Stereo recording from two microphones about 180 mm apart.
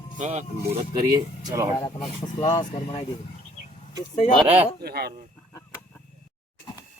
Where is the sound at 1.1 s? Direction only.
20° right (ahead or behind).